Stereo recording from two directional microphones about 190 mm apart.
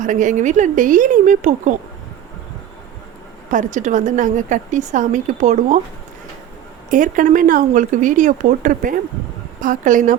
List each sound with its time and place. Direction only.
0.0 s a woman's voice: 40° right (ahead or behind)
3.5 s a woman's voice: 40° right (ahead or behind)
6.9 s speech: 45° right (ahead or behind)